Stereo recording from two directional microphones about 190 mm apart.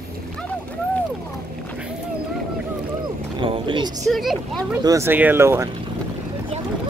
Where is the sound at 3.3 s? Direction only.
25° right (ahead or behind).